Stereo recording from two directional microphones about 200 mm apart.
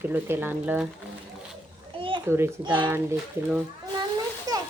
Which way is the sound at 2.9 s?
10° right (ahead or behind).